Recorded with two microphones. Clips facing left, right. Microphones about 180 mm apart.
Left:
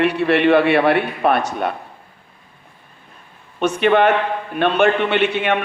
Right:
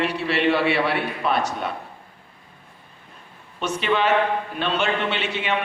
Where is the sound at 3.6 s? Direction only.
55° left (ahead or behind).